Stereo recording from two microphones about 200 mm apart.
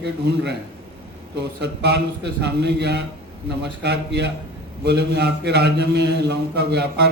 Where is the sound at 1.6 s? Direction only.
55° right (ahead or behind).